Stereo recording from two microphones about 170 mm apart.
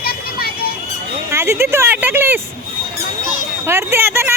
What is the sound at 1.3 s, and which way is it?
Speech, 15° right (ahead or behind).